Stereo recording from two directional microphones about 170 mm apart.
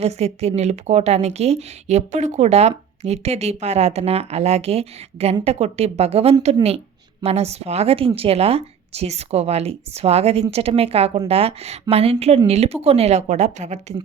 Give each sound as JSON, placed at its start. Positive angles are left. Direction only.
{"t": 0.0, "sound": "a woman's voice", "side_deg": -40}